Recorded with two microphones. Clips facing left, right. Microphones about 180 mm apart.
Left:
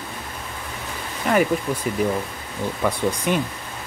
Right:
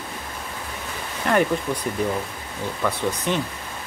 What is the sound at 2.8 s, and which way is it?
Speech, 10° left (ahead or behind).